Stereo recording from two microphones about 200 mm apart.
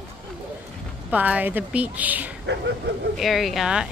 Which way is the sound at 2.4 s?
60° right (ahead or behind).